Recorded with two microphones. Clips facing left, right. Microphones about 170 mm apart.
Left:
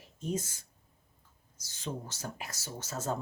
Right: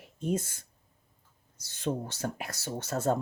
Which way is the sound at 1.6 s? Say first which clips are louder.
Right 7 dB; 60° right (ahead or behind).